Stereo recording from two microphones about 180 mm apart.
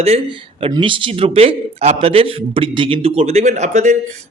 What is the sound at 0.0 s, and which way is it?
A man's voice, 30° right (ahead or behind).